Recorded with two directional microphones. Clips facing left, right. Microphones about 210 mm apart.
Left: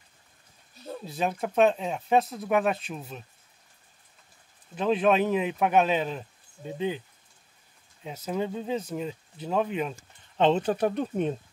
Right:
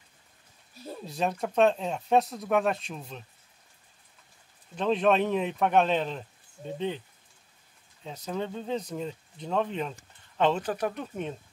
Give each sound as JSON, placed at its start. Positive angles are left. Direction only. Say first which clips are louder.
{"t": 1.0, "sound": "speech", "louder": "even", "side_deg": 0}
{"t": 4.7, "sound": "speech", "louder": "left 1 dB", "side_deg": 5}
{"t": 8.0, "sound": "speech", "louder": "left 3 dB", "side_deg": 10}
{"t": 10.3, "sound": "speech", "louder": "left 3 dB", "side_deg": 25}